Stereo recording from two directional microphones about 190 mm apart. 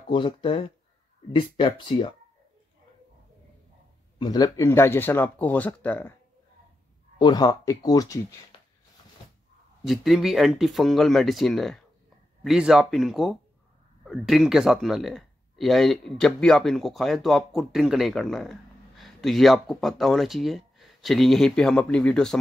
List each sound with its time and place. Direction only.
0.1 s speech: 25° left (ahead or behind)
4.2 s speech: 20° left (ahead or behind)
7.2 s speech: 20° left (ahead or behind)
9.8 s speech: centre (ahead or behind)